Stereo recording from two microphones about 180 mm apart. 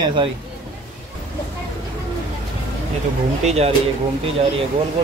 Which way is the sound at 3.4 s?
35° right (ahead or behind).